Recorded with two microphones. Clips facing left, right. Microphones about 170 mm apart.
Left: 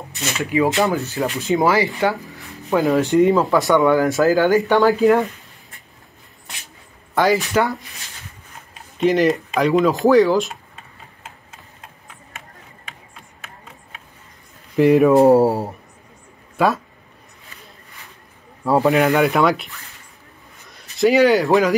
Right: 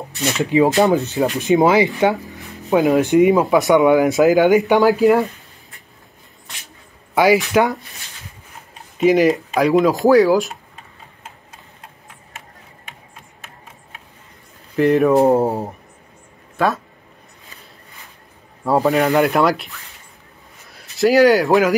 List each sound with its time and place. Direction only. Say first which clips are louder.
0.4 s speech: right 4 dB; 20° right (ahead or behind)
4.8 s speech: right 1 dB; centre (ahead or behind)
7.5 s speech: right 3 dB; 15° right (ahead or behind)
9.0 s speech: right 2 dB; 5° right (ahead or behind)
9.8 s speech: right 1 dB; 15° right (ahead or behind)
10.0 s speech: right 1 dB; centre (ahead or behind)
14.8 s speech: left 1 dB; centre (ahead or behind)
17.6 s a sound: even; centre (ahead or behind)
18.6 s speech: even; centre (ahead or behind)
20.7 s speech: right 1 dB; centre (ahead or behind)